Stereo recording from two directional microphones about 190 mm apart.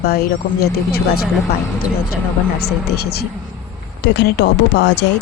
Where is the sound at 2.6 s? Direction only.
55° left (ahead or behind).